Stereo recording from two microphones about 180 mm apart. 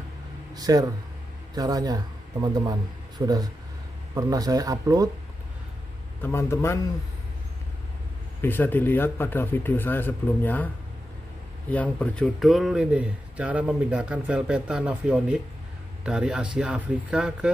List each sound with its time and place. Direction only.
0.6 s a man's voice: 20° right (ahead or behind)
6.2 s speech: 15° left (ahead or behind)
8.4 s speech: 10° left (ahead or behind)
11.7 s speech: 10° left (ahead or behind)